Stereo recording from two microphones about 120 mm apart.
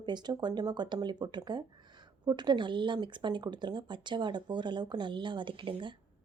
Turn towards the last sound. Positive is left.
turn(degrees=-45)  # may be behind; listen again after turning